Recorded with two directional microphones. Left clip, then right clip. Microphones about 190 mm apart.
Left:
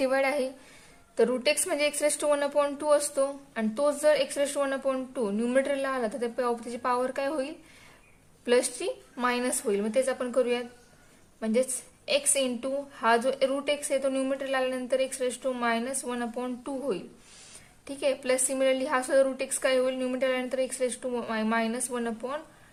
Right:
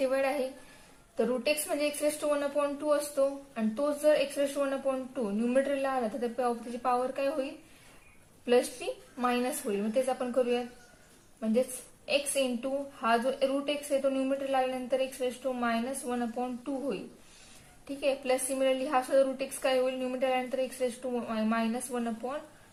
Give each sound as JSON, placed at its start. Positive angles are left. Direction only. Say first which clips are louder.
{"t": 0.0, "sound": "a woman's voice", "louder": "left 3 dB", "side_deg": 60}
{"t": 8.4, "sound": "a woman's voice", "louder": "left 2 dB", "side_deg": 55}